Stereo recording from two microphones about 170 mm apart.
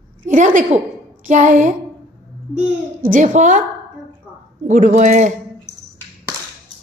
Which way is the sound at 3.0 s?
45° right (ahead or behind).